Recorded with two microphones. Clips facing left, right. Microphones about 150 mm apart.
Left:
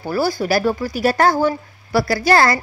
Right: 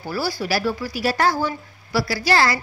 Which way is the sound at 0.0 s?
50° left (ahead or behind).